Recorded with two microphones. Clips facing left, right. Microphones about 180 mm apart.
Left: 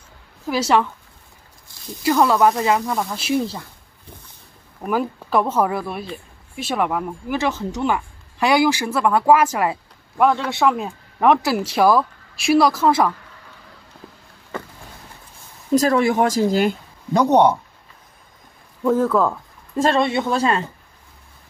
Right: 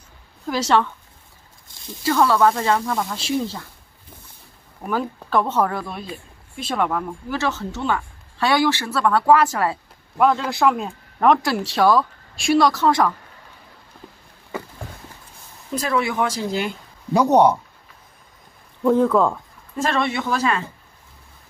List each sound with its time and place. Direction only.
0.5 s speech: 10° left (ahead or behind)
2.0 s speech: 15° left (ahead or behind)
4.8 s speech: 10° left (ahead or behind)
10.1 s speech: centre (ahead or behind)
15.7 s speech: 40° left (ahead or behind)
17.1 s speech: 5° right (ahead or behind)
18.9 s speech: centre (ahead or behind)
19.8 s speech: 25° left (ahead or behind)